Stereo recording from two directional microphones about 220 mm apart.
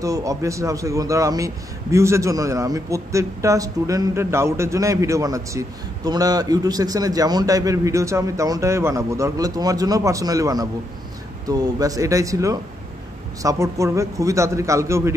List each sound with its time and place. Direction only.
0.0 s a man's voice: 15° right (ahead or behind)